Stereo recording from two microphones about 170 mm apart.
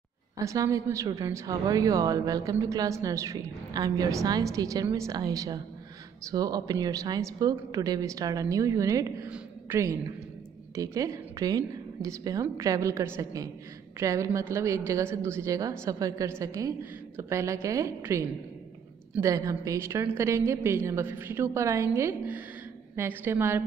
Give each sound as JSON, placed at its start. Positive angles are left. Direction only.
{"t": 0.4, "sound": "a woman's voice", "side_deg": -20}